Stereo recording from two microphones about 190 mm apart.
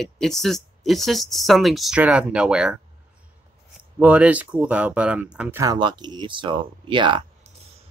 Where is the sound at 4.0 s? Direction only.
5° right (ahead or behind).